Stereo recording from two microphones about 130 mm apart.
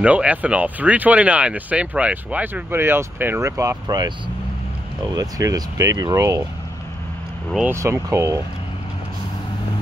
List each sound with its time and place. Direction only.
0.0 s speech: 10° right (ahead or behind); by 4.1 s 30° right (ahead or behind)
5.1 s speech: 30° right (ahead or behind)
7.7 s speech: 20° right (ahead or behind)